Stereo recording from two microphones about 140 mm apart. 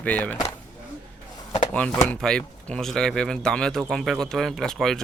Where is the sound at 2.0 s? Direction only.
5° left (ahead or behind).